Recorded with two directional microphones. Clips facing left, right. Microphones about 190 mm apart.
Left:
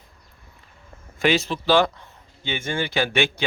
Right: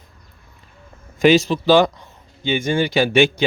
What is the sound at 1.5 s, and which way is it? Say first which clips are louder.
A man's voice: right 5 dB; 15° right (ahead or behind).